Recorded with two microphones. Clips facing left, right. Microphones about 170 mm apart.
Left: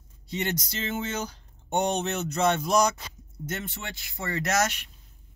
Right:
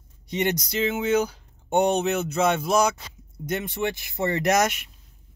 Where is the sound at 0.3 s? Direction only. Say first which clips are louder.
Right 6 dB; 15° right (ahead or behind).